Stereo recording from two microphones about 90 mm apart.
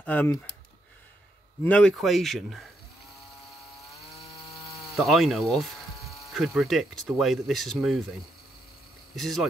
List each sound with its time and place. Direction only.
0.0 s speech: 20° left (ahead or behind)
1.6 s speech: 15° left (ahead or behind)
4.6 s speech: centre (ahead or behind)
9.1 s speech: centre (ahead or behind)